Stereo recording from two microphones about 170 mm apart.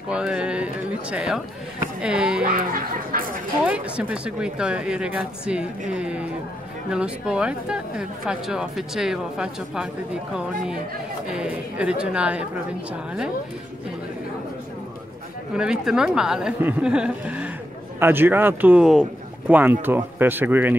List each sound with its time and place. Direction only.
0.1 s speech: 5° right (ahead or behind)
2.4 s speech: 55° right (ahead or behind)
3.6 s speech: 5° right (ahead or behind)
15.5 s speech: 5° right (ahead or behind)